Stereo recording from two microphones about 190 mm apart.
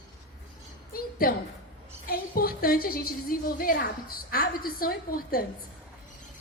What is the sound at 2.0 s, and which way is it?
A woman's voice, 50° left (ahead or behind).